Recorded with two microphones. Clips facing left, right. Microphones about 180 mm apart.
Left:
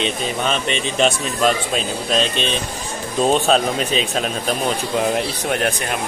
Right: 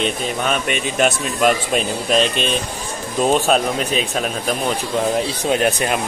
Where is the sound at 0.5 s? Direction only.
10° right (ahead or behind).